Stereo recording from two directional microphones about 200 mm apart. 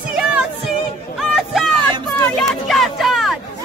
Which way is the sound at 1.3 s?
Centre (ahead or behind).